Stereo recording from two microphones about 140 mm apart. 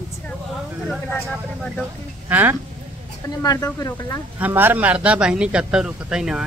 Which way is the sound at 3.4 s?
25° left (ahead or behind).